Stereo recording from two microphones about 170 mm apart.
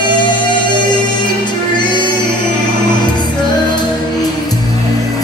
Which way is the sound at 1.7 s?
25° left (ahead or behind).